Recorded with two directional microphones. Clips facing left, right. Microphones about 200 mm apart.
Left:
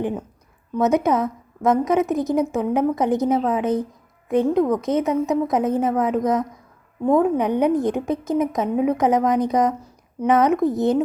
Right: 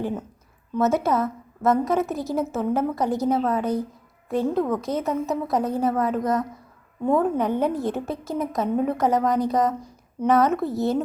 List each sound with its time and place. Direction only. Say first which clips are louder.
0.0 s a woman's voice: left 3 dB; 10° left (ahead or behind)